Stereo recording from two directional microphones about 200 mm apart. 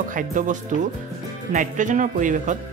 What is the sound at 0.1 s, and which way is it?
Speech, 40° right (ahead or behind).